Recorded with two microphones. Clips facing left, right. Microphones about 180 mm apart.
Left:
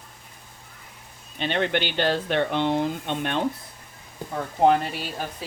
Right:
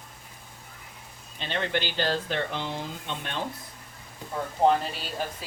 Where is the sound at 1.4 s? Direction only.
65° left (ahead or behind).